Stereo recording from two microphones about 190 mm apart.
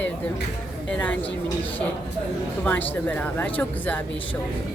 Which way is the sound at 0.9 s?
10° left (ahead or behind).